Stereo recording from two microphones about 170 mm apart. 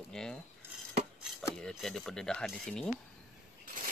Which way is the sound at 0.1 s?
5° left (ahead or behind).